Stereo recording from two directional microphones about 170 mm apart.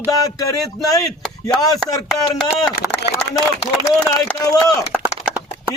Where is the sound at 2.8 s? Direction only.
10° right (ahead or behind).